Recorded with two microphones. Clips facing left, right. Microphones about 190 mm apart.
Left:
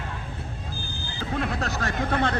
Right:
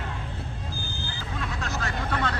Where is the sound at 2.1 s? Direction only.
55° left (ahead or behind).